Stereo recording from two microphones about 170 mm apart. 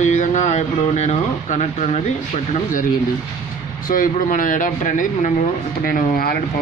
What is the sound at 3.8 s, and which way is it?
Speech, 55° left (ahead or behind).